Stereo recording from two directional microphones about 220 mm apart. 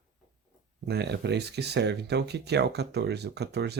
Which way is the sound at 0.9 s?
50° right (ahead or behind).